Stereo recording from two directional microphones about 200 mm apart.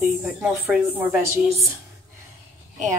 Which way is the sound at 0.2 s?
5° right (ahead or behind).